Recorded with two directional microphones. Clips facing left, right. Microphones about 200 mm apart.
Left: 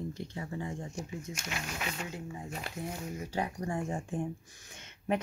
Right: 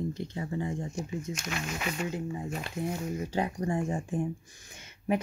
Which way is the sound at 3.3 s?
25° right (ahead or behind).